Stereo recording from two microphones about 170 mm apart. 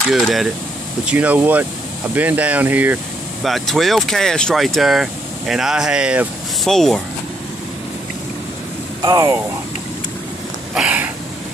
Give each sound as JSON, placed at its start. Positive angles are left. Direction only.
{"t": 0.1, "sound": "speech", "side_deg": 0}
{"t": 3.4, "sound": "speech", "side_deg": 0}
{"t": 9.0, "sound": "speech", "side_deg": -20}
{"t": 10.7, "sound": "a sound", "side_deg": -5}